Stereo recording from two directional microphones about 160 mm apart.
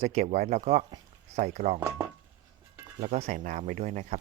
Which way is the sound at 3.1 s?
45° right (ahead or behind).